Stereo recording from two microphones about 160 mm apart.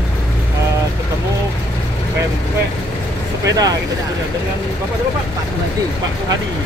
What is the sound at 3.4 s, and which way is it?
Speech, 25° right (ahead or behind).